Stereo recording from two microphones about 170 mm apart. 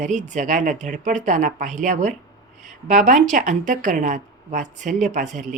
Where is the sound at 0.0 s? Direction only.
45° right (ahead or behind).